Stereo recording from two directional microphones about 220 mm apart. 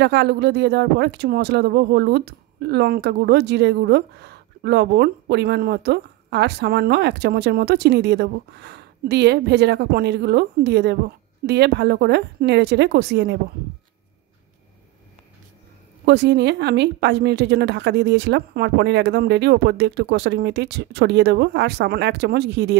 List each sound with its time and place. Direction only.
0.0 s speech: 50° right (ahead or behind)
16.1 s speech: 50° right (ahead or behind)